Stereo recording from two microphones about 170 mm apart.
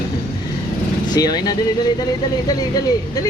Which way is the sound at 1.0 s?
25° left (ahead or behind).